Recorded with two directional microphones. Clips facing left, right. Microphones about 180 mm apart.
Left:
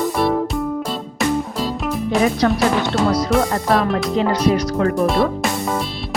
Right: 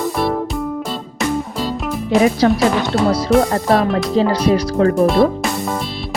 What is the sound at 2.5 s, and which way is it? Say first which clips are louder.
Speech: right 2 dB; centre (ahead or behind).